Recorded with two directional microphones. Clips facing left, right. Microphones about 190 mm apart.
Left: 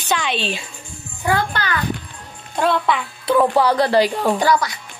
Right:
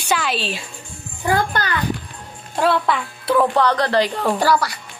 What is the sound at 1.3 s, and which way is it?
Speech, 45° right (ahead or behind).